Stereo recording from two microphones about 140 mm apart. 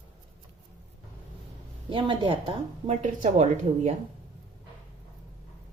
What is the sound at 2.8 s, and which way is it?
A woman's voice, 60° right (ahead or behind).